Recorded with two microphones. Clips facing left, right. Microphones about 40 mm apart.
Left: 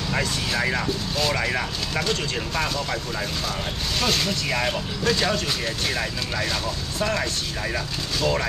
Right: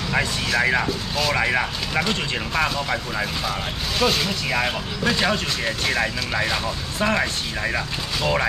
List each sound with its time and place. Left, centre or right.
0.6 s speech: centre
0.8 s speech: centre
1.3 s speech: centre